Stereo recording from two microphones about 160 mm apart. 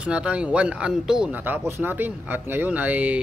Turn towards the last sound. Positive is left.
turn(degrees=-10)  # may be behind; listen again after turning